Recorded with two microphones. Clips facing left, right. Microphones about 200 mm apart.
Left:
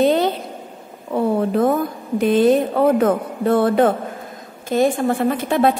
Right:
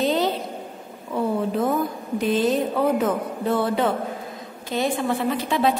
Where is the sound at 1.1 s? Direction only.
50° left (ahead or behind).